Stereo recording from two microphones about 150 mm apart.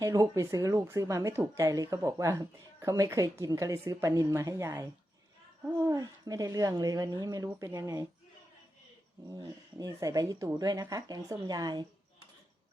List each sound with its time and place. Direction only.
0.0 s speech: 20° right (ahead or behind)
9.3 s speech: 25° right (ahead or behind)